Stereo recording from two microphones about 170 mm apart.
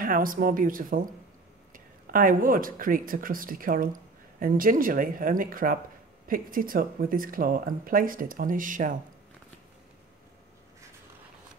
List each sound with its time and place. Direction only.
0.0 s speech: 55° right (ahead or behind)